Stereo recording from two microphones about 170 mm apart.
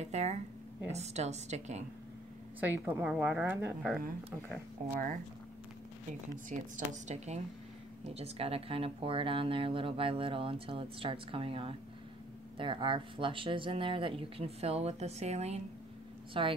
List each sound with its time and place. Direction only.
0.0 s speech: 40° right (ahead or behind)
2.6 s a woman's voice: 10° right (ahead or behind)
6.5 s a woman's voice: 45° right (ahead or behind)